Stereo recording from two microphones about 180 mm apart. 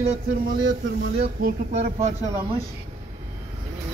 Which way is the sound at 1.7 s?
40° right (ahead or behind).